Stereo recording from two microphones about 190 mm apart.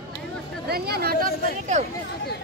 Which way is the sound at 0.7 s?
55° right (ahead or behind).